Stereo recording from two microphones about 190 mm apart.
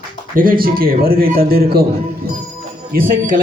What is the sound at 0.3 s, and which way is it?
A man's voice, 50° right (ahead or behind).